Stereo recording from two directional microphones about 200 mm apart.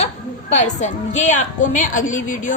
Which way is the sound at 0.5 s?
35° left (ahead or behind).